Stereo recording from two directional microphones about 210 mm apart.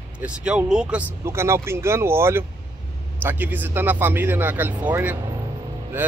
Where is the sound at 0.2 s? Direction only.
5° right (ahead or behind).